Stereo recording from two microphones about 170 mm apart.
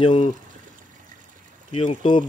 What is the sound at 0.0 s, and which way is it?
Speech, 30° left (ahead or behind).